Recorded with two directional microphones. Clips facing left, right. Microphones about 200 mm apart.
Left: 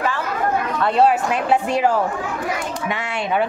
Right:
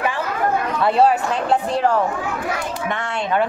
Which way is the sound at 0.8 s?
Centre (ahead or behind).